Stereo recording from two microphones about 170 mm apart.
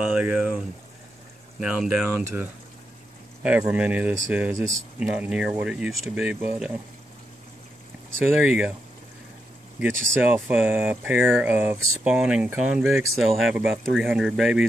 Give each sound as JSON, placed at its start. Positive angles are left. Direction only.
{"t": 0.0, "sound": "speech", "side_deg": -5}
{"t": 4.6, "sound": "speech", "side_deg": -20}
{"t": 4.9, "sound": "speech", "side_deg": -5}
{"t": 8.3, "sound": "speech", "side_deg": -5}
{"t": 9.8, "sound": "speech", "side_deg": -10}